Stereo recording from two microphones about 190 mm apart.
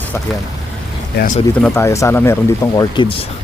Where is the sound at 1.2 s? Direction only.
60° left (ahead or behind).